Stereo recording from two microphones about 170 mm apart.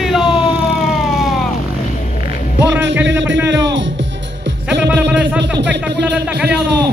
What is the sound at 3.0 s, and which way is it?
Music, 90° right.